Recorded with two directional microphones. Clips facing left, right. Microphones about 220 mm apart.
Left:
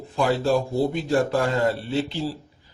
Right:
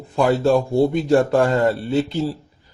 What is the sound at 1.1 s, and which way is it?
Speech, 45° right (ahead or behind).